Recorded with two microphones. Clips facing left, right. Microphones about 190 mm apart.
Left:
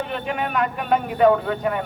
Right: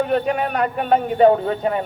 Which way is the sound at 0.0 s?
40° right (ahead or behind).